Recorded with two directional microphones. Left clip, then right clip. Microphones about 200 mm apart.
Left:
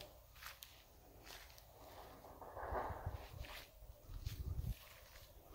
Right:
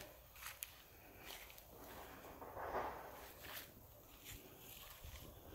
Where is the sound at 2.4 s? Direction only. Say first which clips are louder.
Even; 25° left (ahead or behind).